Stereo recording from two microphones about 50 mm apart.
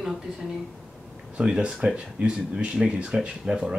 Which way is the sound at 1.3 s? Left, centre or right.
Centre.